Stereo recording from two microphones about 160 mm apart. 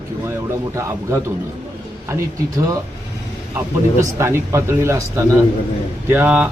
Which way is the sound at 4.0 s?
20° right (ahead or behind).